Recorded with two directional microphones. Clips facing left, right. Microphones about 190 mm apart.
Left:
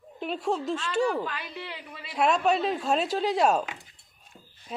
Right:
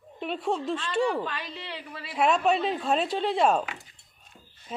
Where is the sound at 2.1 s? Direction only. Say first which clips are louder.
Even; centre (ahead or behind).